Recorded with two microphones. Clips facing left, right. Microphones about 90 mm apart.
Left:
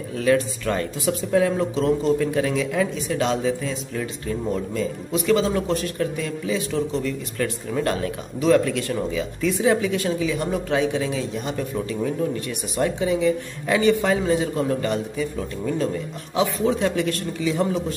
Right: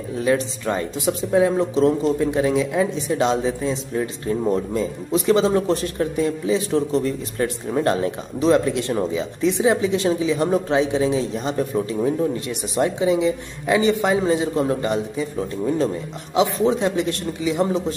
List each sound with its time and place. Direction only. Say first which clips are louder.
0.1 s speech: even; 25° right (ahead or behind)